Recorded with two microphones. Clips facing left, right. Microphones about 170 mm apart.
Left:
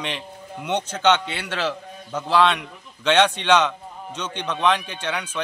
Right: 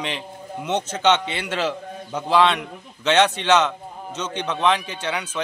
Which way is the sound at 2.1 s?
10° right (ahead or behind).